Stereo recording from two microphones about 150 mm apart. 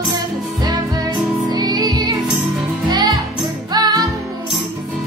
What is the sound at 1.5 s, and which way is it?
Music, 25° right (ahead or behind).